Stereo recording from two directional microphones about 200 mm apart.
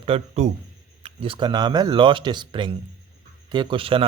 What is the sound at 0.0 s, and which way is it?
Speech, 30° right (ahead or behind).